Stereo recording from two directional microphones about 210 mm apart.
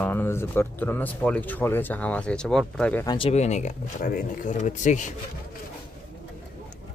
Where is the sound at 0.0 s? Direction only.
10° left (ahead or behind).